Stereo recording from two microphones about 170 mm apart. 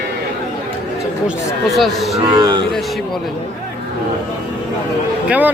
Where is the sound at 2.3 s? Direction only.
25° right (ahead or behind).